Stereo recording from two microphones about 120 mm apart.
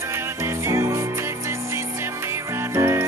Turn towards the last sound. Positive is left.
turn(degrees=-20)  # may be behind; listen again after turning